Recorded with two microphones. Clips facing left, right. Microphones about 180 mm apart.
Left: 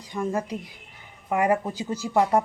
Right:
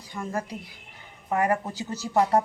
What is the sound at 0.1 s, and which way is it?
A woman's voice, 20° left (ahead or behind).